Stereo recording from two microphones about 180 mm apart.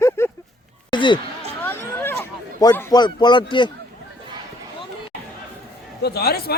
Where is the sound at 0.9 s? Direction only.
25° left (ahead or behind).